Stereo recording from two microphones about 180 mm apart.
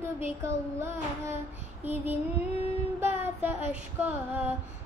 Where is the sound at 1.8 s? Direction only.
10° right (ahead or behind).